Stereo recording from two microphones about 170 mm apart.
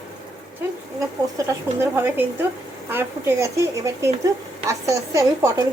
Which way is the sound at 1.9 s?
15° right (ahead or behind).